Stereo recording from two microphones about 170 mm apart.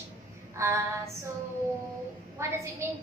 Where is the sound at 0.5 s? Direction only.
15° right (ahead or behind).